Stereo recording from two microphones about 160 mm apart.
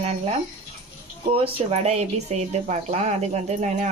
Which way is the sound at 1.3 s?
35° right (ahead or behind).